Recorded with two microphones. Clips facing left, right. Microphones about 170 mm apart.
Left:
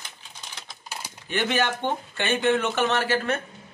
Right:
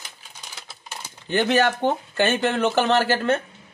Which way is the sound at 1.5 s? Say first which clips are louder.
Right 5 dB; 40° right (ahead or behind).